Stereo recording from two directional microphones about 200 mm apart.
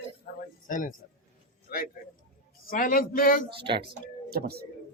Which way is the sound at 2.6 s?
45° left (ahead or behind).